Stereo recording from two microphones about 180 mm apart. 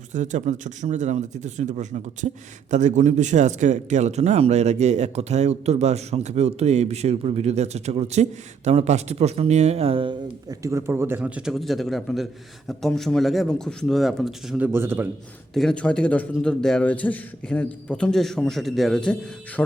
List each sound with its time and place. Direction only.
0.1 s a man's voice: 45° right (ahead or behind); by 14.7 s centre (ahead or behind)
14.7 s a man's voice: 10° right (ahead or behind)
15.5 s a man's voice: 5° left (ahead or behind)